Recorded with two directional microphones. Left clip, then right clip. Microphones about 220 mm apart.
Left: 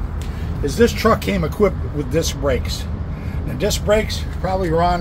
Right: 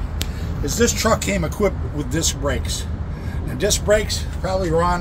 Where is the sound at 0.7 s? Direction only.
25° left (ahead or behind).